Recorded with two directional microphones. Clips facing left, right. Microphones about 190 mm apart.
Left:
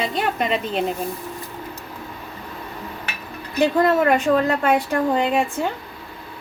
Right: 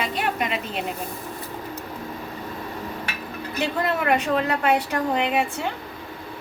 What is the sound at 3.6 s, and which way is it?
Speech, 40° left (ahead or behind).